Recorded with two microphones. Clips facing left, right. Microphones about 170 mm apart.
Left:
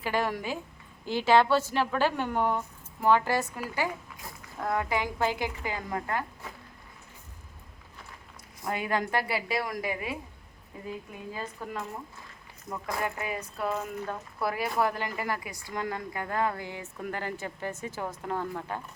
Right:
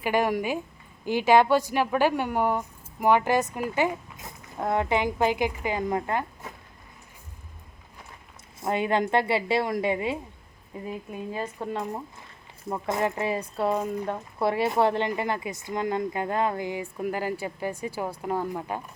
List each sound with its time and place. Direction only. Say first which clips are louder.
0.0 s a woman's voice: right 5 dB; 15° right (ahead or behind)
8.6 s speech: right 5 dB; 25° right (ahead or behind)
11.3 s speech: right 5 dB; 25° right (ahead or behind)